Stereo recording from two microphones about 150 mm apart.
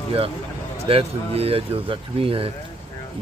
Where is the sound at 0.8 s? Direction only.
40° right (ahead or behind).